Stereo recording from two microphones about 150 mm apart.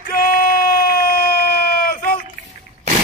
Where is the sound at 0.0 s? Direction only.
85° left.